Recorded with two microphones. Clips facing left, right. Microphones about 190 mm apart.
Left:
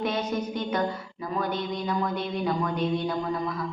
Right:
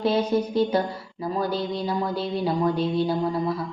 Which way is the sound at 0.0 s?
30° right (ahead or behind).